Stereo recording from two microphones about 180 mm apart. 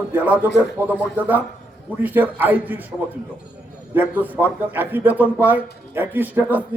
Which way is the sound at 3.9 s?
10° right (ahead or behind).